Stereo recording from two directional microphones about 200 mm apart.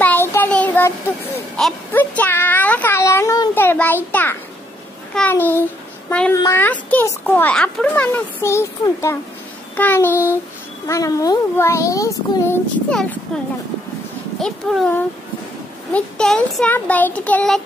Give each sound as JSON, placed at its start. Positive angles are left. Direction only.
{"t": 0.0, "sound": "child singing", "side_deg": 10}
{"t": 5.1, "sound": "a child's voice", "side_deg": 10}
{"t": 14.4, "sound": "a child's voice", "side_deg": 0}